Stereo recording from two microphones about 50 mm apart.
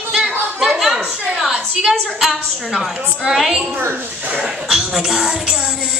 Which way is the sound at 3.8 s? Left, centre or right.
Right.